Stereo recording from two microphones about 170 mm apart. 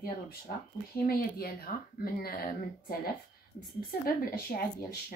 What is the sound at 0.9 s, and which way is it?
Speech, 60° left (ahead or behind).